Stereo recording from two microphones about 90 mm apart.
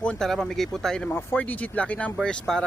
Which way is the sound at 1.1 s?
20° left (ahead or behind).